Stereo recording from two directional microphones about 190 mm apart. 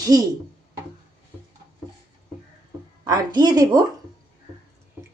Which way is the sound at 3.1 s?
20° right (ahead or behind).